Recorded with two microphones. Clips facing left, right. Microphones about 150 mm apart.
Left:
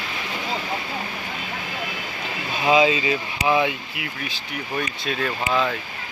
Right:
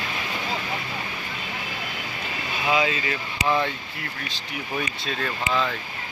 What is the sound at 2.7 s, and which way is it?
Speech, 20° left (ahead or behind).